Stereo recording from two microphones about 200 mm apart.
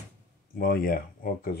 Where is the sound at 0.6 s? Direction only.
45° left (ahead or behind).